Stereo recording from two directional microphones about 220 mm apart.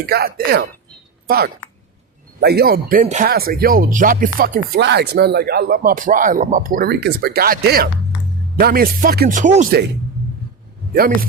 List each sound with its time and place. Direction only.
0.0 s speech: 45° right (ahead or behind)
2.4 s speech: 45° right (ahead or behind)
10.9 s speech: 40° right (ahead or behind)